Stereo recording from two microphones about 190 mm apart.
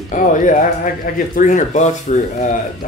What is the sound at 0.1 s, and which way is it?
Speech, 40° left (ahead or behind).